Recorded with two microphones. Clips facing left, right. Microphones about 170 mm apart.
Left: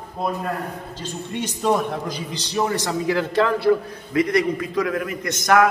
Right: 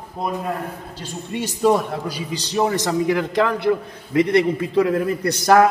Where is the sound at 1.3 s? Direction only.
10° right (ahead or behind).